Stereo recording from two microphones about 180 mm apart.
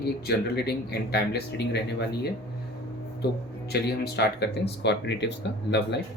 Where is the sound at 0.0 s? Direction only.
65° left (ahead or behind).